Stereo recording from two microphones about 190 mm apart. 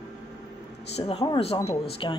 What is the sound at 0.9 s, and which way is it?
Speech, 30° left (ahead or behind).